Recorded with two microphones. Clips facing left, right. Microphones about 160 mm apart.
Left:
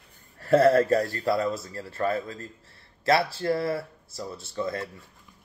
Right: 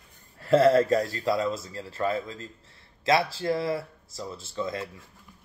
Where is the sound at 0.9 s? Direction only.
20° right (ahead or behind).